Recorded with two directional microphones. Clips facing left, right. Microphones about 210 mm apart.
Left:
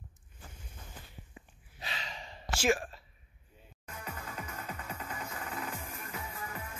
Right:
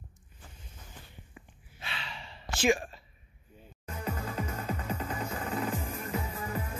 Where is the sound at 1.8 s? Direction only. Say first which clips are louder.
Even; 40° left (ahead or behind).